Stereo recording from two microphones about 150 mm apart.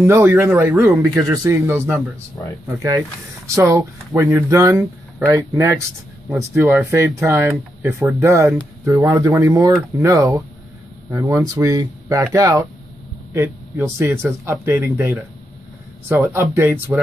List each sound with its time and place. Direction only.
0.0 s speech: 15° right (ahead or behind)
3.4 s speech: 20° right (ahead or behind)
13.3 s a sound: 15° right (ahead or behind)
13.9 s speech: 15° right (ahead or behind)